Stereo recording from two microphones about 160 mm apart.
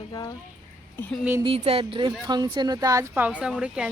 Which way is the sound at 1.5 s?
35° right (ahead or behind).